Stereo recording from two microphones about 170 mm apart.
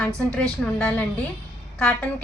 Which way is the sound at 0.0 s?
5° left (ahead or behind).